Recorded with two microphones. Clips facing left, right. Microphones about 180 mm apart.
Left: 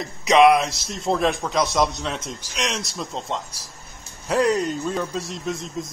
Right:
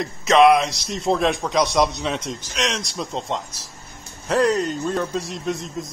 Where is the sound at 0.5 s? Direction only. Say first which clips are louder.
Right 1 dB; centre (ahead or behind).